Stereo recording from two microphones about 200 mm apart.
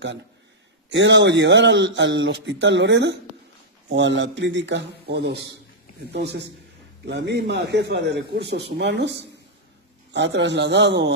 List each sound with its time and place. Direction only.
0.8 s speech: 65° right (ahead or behind)